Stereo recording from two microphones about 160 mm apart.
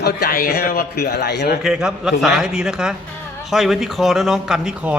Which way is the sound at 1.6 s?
5° right (ahead or behind).